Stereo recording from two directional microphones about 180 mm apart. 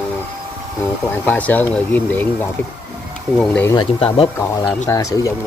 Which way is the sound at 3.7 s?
30° left (ahead or behind).